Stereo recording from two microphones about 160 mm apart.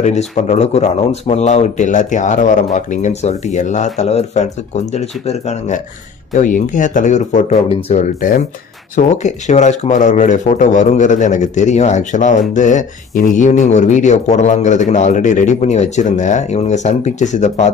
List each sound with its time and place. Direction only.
0.0 s speech: 45° left (ahead or behind)
6.3 s speech: 55° left (ahead or behind)